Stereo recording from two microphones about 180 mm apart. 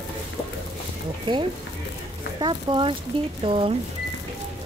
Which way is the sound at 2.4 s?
25° right (ahead or behind).